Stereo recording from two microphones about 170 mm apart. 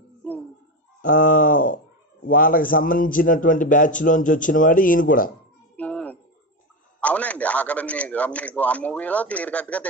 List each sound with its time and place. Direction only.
1.0 s a man's voice: 50° left (ahead or behind)
5.8 s a sound: 10° left (ahead or behind)
7.0 s a man's voice: 10° left (ahead or behind)